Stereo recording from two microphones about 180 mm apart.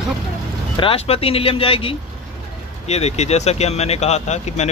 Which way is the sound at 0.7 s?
30° left (ahead or behind).